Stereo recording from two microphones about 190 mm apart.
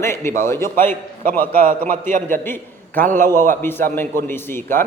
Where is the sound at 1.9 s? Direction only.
40° right (ahead or behind).